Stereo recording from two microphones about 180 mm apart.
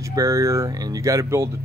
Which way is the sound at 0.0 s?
20° right (ahead or behind).